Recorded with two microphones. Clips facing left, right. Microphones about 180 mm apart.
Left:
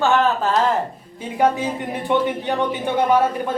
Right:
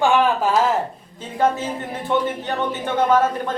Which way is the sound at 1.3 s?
15° left (ahead or behind).